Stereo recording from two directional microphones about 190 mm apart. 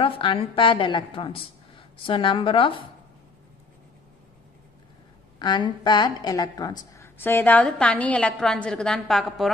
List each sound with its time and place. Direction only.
0.0 s a woman's voice: 25° left (ahead or behind)
5.4 s a woman's voice: 20° left (ahead or behind); by 9.5 s centre (ahead or behind)